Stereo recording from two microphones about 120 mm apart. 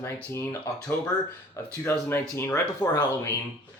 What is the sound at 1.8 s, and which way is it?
Speech, 20° left (ahead or behind).